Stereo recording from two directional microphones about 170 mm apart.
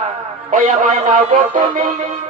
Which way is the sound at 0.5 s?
50° right (ahead or behind).